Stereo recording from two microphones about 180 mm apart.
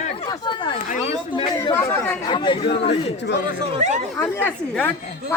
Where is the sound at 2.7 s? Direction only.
70° left (ahead or behind).